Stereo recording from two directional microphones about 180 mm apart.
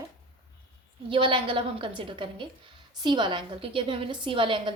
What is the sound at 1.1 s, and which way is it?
A woman's voice, 30° right (ahead or behind).